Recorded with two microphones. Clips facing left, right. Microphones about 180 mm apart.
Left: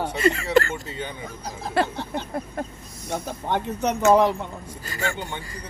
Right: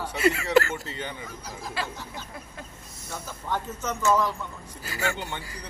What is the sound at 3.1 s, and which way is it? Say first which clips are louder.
Speech: left 6 dB; 70° left (ahead or behind).